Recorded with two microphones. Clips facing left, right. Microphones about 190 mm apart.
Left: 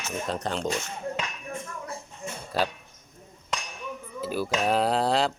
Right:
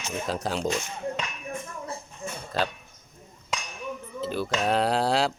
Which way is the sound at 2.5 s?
10° left (ahead or behind).